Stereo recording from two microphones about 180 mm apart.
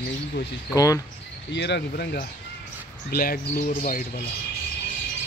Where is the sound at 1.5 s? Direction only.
70° left (ahead or behind); by 4.2 s 45° left (ahead or behind).